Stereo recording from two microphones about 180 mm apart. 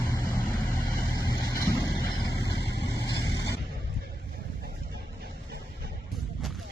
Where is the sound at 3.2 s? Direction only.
80° left.